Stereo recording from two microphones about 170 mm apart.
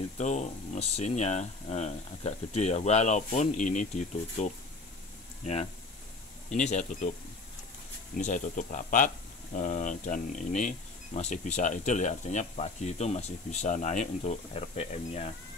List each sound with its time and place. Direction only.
0.2 s speech: 45° left (ahead or behind)
8.2 s speech: 45° left (ahead or behind)
11.1 s speech: 35° left (ahead or behind)